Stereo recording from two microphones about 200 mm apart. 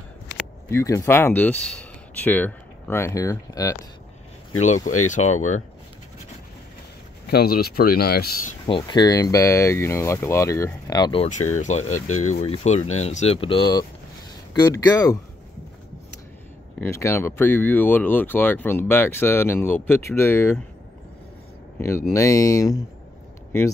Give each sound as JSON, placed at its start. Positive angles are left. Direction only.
{"t": 0.7, "sound": "speech", "side_deg": 15}
{"t": 4.5, "sound": "speech", "side_deg": 35}
{"t": 7.2, "sound": "speech", "side_deg": 50}
{"t": 8.6, "sound": "speech", "side_deg": 25}
{"t": 11.5, "sound": "speech", "side_deg": 35}
{"t": 16.8, "sound": "speech", "side_deg": 15}
{"t": 21.7, "sound": "speech", "side_deg": 15}